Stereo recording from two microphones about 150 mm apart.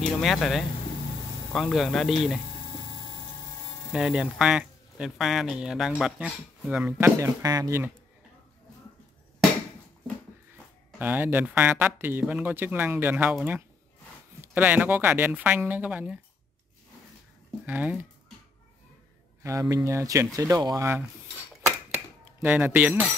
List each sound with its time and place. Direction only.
0.0 s speech: centre (ahead or behind)
3.9 s speech: 5° right (ahead or behind)
7.0 s speech: 20° right (ahead or behind)
11.0 s speech: 10° right (ahead or behind)
14.4 s speech: 10° right (ahead or behind)
17.6 s speech: 10° right (ahead or behind)
19.4 s speech: 20° right (ahead or behind)
22.4 s speech: 10° right (ahead or behind)